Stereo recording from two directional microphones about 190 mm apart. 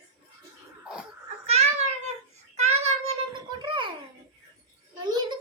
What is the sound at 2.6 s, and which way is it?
Child singing, 35° right (ahead or behind).